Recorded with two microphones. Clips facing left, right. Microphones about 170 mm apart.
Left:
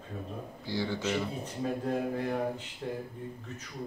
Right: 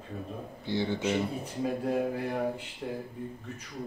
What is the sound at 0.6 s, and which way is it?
Speech, 20° right (ahead or behind).